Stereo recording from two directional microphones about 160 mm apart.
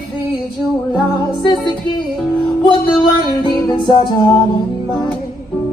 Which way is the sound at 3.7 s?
30° left (ahead or behind).